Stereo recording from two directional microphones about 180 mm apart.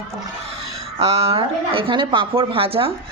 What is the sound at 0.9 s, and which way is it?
A woman's voice, 35° right (ahead or behind).